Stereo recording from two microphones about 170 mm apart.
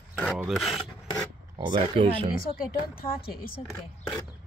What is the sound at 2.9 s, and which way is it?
Speech, 60° left (ahead or behind).